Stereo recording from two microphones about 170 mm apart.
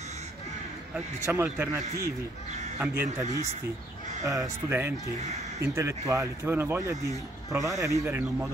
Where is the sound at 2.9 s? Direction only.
15° right (ahead or behind).